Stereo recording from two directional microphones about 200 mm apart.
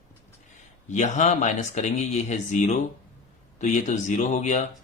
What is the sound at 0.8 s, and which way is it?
Speech, 35° left (ahead or behind).